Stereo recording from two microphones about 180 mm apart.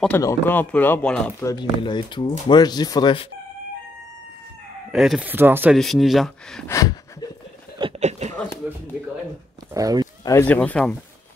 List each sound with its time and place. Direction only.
0.2 s speech: 15° left (ahead or behind)
1.4 s speech: 25° left (ahead or behind)
4.9 s speech: centre (ahead or behind)
5.8 s speech: centre (ahead or behind)
6.7 s a sound: 20° left (ahead or behind)
8.0 s a sound: 40° right (ahead or behind)
8.6 s speech: 10° right (ahead or behind)
9.8 s speech: 20° right (ahead or behind)
10.2 s speech: 10° left (ahead or behind)